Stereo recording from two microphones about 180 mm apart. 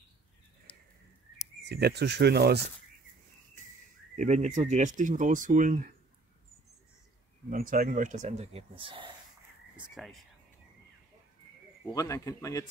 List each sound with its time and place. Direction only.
1.6 s speech: 65° right (ahead or behind)
4.1 s speech: 40° right (ahead or behind)
7.4 s speech: 50° right (ahead or behind); by 9.1 s 30° right (ahead or behind)
9.9 s speech: centre (ahead or behind)
11.9 s a man's voice: 20° left (ahead or behind)